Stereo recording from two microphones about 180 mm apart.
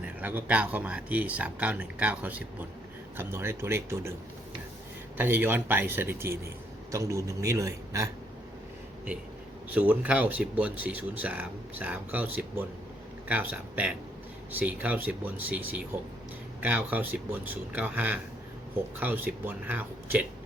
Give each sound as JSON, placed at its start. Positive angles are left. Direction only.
{"t": 0.0, "sound": "speech", "side_deg": -10}
{"t": 5.1, "sound": "speech", "side_deg": -10}
{"t": 9.7, "sound": "speech", "side_deg": -10}